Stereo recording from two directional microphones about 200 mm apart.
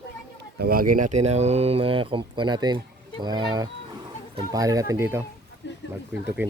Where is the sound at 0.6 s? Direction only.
45° right (ahead or behind); by 5.2 s 15° right (ahead or behind).